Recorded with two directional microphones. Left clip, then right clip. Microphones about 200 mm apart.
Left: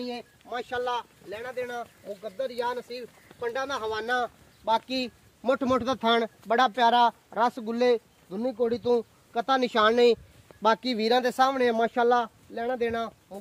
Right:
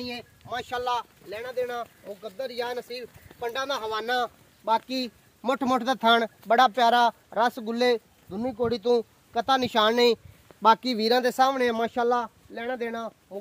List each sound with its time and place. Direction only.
0.0 s speech: 10° right (ahead or behind)
12.5 s speech: 30° left (ahead or behind)